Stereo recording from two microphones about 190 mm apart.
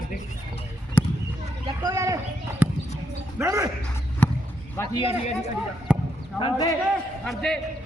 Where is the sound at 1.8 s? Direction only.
15° right (ahead or behind).